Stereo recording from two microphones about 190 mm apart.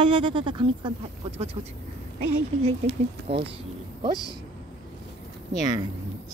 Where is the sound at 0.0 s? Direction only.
25° right (ahead or behind).